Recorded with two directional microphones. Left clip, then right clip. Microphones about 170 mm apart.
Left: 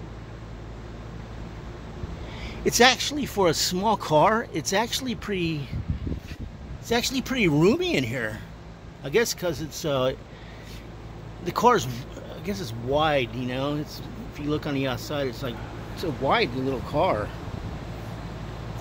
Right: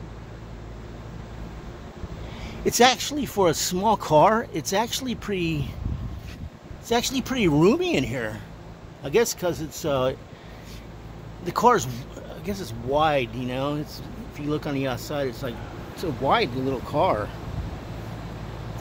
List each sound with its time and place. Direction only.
2.4 s speech: centre (ahead or behind)
6.9 s speech: 5° right (ahead or behind)
11.4 s speech: centre (ahead or behind)